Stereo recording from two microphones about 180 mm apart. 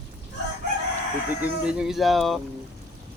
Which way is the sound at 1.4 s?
5° right (ahead or behind).